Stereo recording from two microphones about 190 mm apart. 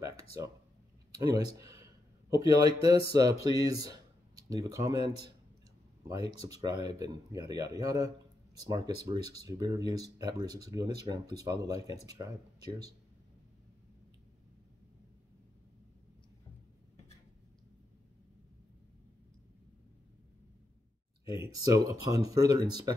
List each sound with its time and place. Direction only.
0.1 s a sound: 30° left (ahead or behind)
1.3 s speech: 20° right (ahead or behind)
6.0 s speech: 20° right (ahead or behind)
21.3 s speech: 15° right (ahead or behind)